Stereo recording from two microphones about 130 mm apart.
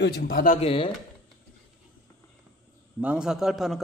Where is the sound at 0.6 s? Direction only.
45° left (ahead or behind).